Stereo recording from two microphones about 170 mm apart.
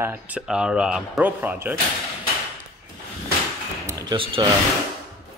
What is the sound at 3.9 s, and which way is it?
Speech, 30° right (ahead or behind).